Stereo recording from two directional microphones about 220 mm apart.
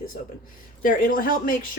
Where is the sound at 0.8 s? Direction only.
40° left (ahead or behind).